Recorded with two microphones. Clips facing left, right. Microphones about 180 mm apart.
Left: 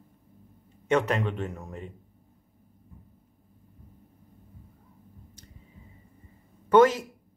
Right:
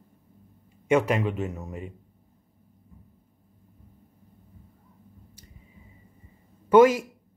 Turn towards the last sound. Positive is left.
turn(degrees=-10)  # may be behind; listen again after turning